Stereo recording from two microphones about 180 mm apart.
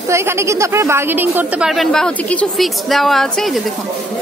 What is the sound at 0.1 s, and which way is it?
A woman's voice, 15° right (ahead or behind).